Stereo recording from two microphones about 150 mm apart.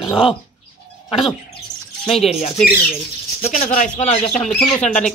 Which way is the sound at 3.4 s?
45° left (ahead or behind).